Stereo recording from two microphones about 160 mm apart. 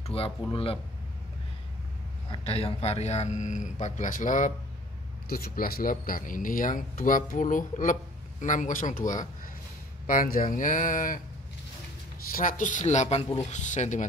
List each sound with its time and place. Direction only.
0.0 s speech: 35° left (ahead or behind)
2.3 s a man's voice: 40° left (ahead or behind); by 4.5 s 55° left (ahead or behind)
5.3 s speech: 70° left (ahead or behind)
12.3 s a man's voice: 60° left (ahead or behind)